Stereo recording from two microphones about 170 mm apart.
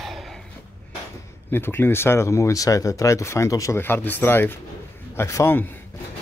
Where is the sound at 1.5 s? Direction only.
15° left (ahead or behind).